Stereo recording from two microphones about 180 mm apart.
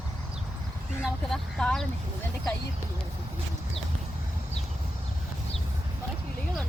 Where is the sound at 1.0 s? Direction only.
5° left (ahead or behind).